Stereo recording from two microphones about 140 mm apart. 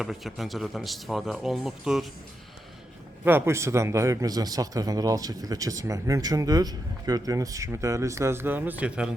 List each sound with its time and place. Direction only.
0.0 s speech: centre (ahead or behind)
3.2 s a man's voice: 15° right (ahead or behind)